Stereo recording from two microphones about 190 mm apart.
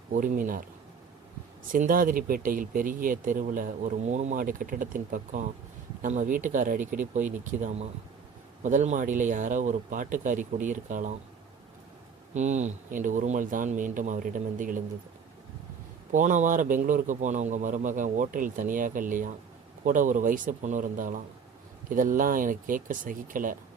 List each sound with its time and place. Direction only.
0.1 s speech: 45° right (ahead or behind)
1.7 s speech: 45° right (ahead or behind)
12.3 s speech: 40° right (ahead or behind)
16.1 s speech: 40° right (ahead or behind)